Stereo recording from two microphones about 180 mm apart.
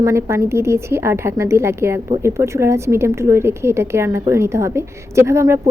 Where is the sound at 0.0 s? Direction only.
15° right (ahead or behind).